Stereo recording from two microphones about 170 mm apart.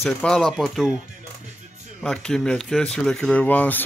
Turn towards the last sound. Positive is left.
turn(degrees=10)  # may be behind; listen again after turning